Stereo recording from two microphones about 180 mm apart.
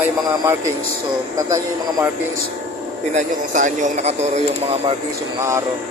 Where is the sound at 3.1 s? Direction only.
45° right (ahead or behind).